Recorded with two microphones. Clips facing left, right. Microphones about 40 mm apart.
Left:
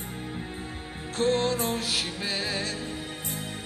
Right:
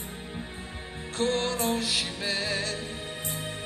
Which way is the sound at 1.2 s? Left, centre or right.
Left.